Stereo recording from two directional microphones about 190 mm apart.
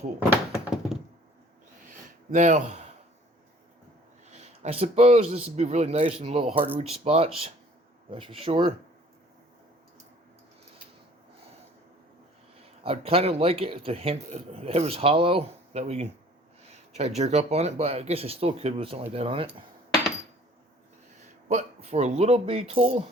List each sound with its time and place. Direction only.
2.3 s speech: 40° right (ahead or behind)
4.3 s speech: 35° right (ahead or behind)
12.8 s speech: 30° right (ahead or behind)
19.5 s cutlery: centre (ahead or behind)
21.2 s speech: 40° right (ahead or behind)